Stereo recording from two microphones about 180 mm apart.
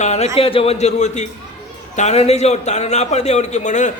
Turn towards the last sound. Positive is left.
turn(degrees=40)  # may be behind; listen again after turning